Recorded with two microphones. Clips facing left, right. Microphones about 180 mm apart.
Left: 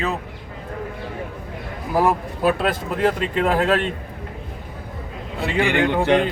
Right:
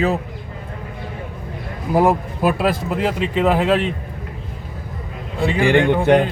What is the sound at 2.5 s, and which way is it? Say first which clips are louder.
Speech: right 3 dB; 10° right (ahead or behind).